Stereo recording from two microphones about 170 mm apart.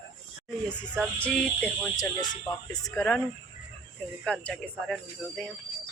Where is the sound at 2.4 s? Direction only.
20° left (ahead or behind).